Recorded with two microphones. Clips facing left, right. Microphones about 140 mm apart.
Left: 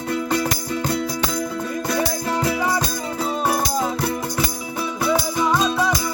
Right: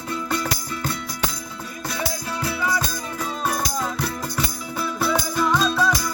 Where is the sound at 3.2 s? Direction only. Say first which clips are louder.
Left 4 dB; 20° left (ahead or behind).